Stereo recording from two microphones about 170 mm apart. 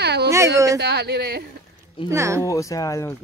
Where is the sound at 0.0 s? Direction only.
75° right (ahead or behind).